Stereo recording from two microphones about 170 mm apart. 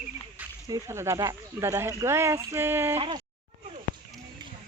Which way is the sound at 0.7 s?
15° right (ahead or behind).